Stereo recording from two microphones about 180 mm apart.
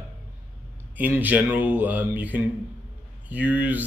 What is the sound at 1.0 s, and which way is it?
Speech, 10° right (ahead or behind).